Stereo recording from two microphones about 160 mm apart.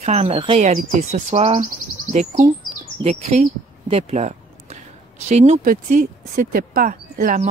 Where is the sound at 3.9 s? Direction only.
40° right (ahead or behind).